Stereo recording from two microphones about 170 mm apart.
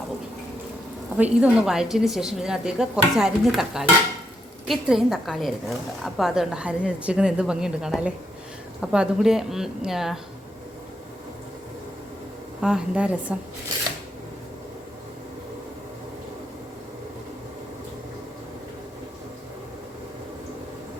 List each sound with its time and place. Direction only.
1.1 s a woman's voice: 5° right (ahead or behind)
12.6 s a woman's voice: 5° right (ahead or behind)